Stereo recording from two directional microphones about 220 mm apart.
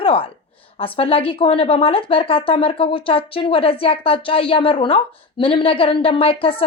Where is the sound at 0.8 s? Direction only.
25° left (ahead or behind).